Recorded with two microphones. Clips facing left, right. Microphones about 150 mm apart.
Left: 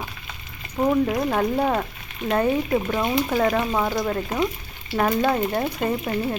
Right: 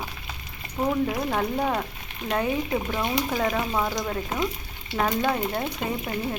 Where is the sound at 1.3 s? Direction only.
5° left (ahead or behind).